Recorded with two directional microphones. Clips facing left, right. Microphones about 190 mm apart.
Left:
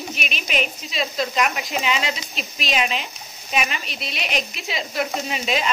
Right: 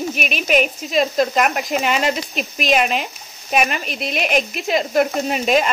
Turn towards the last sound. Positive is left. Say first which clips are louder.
# right 7 dB
turn(degrees=-50)  # may be behind; listen again after turning